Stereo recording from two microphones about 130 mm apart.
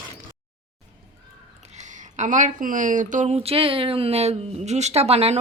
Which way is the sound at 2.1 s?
70° right (ahead or behind).